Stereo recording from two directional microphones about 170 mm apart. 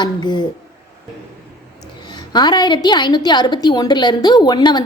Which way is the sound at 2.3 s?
25° left (ahead or behind).